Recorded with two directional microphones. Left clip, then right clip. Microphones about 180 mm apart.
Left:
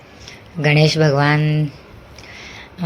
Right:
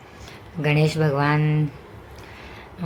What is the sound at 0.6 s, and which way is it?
Speech, 20° left (ahead or behind).